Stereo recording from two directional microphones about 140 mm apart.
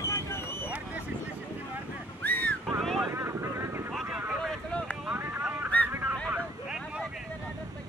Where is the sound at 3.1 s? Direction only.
20° right (ahead or behind).